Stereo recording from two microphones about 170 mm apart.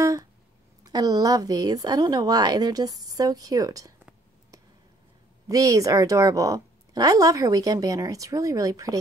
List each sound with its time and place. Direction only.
0.0 s a sound: 20° right (ahead or behind)
0.8 s a woman's voice: 20° right (ahead or behind)
5.5 s a woman's voice: 20° right (ahead or behind)